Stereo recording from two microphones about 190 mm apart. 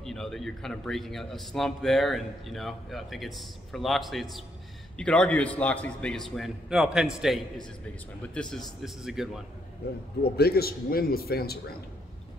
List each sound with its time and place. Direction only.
0.0 s a man's voice: centre (ahead or behind)
10.3 s a man's voice: 55° left (ahead or behind)